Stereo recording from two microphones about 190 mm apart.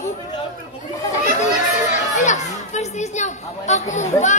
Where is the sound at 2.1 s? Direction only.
40° left (ahead or behind).